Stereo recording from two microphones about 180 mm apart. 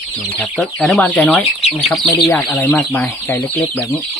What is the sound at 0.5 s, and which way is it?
Speech, centre (ahead or behind).